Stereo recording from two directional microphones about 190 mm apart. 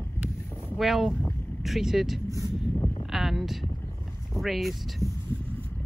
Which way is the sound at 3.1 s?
Centre (ahead or behind).